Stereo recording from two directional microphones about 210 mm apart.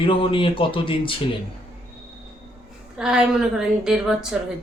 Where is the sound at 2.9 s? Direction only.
5° right (ahead or behind).